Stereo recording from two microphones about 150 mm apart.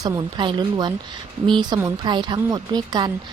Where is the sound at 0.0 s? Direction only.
25° right (ahead or behind).